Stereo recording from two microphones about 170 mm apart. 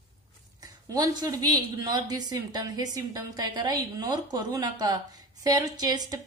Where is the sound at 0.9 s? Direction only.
25° right (ahead or behind).